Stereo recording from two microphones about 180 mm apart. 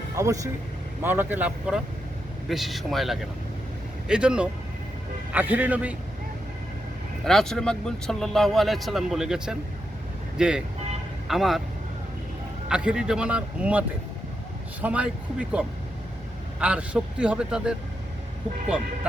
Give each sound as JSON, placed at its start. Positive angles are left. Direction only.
{"t": 0.2, "sound": "a man's voice", "side_deg": -20}
{"t": 7.3, "sound": "speech", "side_deg": 5}
{"t": 12.6, "sound": "a man's voice", "side_deg": -5}